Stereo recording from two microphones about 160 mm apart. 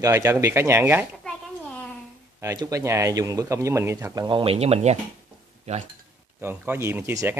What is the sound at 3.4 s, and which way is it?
Speech, 20° right (ahead or behind).